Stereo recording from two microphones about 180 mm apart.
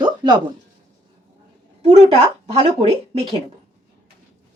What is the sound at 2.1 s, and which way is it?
Speech, 35° right (ahead or behind).